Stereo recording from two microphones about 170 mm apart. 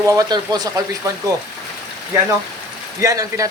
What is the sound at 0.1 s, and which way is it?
Speech, 20° right (ahead or behind).